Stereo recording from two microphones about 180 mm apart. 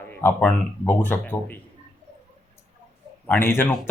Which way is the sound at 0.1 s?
10° left (ahead or behind).